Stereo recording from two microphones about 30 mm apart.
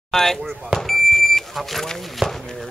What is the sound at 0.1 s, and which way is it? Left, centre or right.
Speech, centre.